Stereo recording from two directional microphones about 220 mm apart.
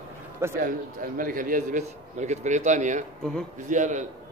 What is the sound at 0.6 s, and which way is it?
A man's voice, 40° right (ahead or behind).